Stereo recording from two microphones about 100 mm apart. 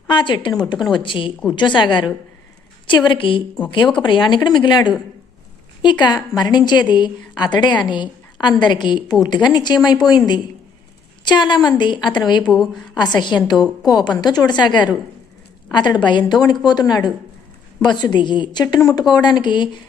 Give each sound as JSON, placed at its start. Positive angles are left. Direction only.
{"t": 0.1, "sound": "a woman's voice", "side_deg": 55}
{"t": 12.5, "sound": "a woman's voice", "side_deg": 5}
{"t": 13.1, "sound": "a woman's voice", "side_deg": 50}
{"t": 17.9, "sound": "a woman's voice", "side_deg": 50}